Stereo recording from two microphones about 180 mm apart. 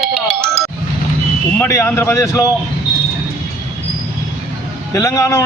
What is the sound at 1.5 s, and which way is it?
Speech, 15° left (ahead or behind).